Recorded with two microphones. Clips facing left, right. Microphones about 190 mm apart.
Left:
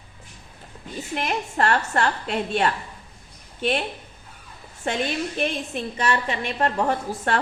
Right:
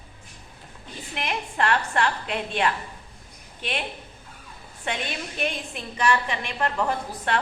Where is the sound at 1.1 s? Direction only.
40° left (ahead or behind).